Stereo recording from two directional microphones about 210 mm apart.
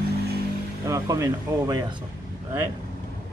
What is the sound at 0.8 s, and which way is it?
A man's voice, 15° right (ahead or behind).